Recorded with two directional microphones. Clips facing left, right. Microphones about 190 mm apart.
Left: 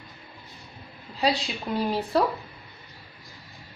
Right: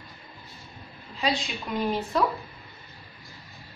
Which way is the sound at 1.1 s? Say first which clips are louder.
Left 3 dB; 35° left (ahead or behind).